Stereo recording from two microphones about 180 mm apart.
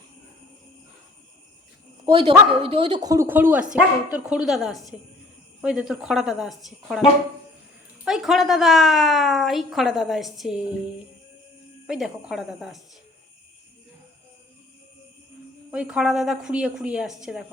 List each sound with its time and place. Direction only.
2.0 s speech: 35° right (ahead or behind)
3.0 s a woman's voice: 20° right (ahead or behind); by 7.0 s centre (ahead or behind)
8.0 s a woman's voice: centre (ahead or behind)
11.9 s a woman's voice: 5° right (ahead or behind)
15.7 s a woman's voice: 5° right (ahead or behind)